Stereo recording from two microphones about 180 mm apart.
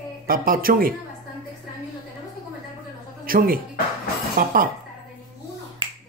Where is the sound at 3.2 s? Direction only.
50° right (ahead or behind).